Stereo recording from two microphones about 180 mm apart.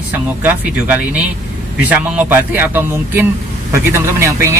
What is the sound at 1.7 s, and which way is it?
A man's voice, 10° right (ahead or behind).